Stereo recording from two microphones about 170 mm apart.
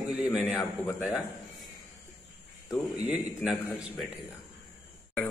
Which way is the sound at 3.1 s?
5° right (ahead or behind).